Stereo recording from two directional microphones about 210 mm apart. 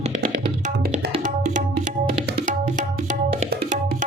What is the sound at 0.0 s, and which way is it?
Music, 40° right (ahead or behind).